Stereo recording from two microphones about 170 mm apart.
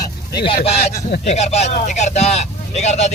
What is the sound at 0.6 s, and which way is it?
Speech, 40° left (ahead or behind).